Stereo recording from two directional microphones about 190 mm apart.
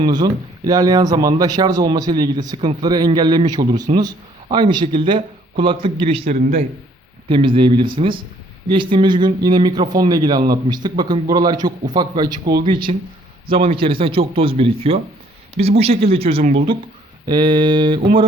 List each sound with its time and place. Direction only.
0.0 s speech: 20° right (ahead or behind)